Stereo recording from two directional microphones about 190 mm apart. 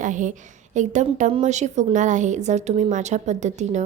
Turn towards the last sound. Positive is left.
turn(degrees=-40)  # may be behind; listen again after turning